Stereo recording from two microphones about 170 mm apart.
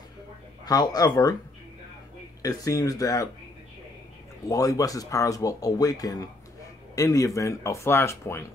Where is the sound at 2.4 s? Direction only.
20° left (ahead or behind).